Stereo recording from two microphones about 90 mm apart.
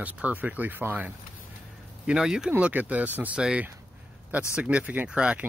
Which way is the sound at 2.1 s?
5° right (ahead or behind).